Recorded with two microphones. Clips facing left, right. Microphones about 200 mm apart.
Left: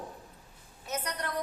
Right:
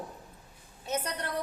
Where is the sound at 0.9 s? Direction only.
30° right (ahead or behind).